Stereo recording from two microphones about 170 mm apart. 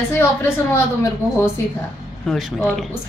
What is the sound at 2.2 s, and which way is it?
Speech, centre (ahead or behind).